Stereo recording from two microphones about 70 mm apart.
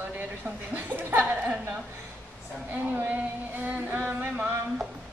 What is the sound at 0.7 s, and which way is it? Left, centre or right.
A woman's voice, right.